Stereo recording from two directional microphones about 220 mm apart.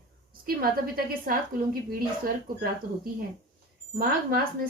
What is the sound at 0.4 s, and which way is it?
Speech, 40° right (ahead or behind).